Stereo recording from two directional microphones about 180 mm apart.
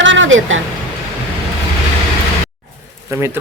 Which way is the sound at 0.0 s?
90° right.